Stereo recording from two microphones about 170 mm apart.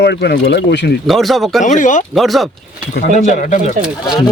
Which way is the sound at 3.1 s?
45° left (ahead or behind).